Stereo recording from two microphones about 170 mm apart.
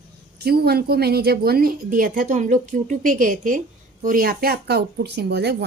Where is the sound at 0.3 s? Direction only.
70° right (ahead or behind).